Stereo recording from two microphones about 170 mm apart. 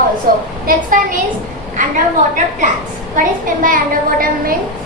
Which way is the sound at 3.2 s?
55° right (ahead or behind).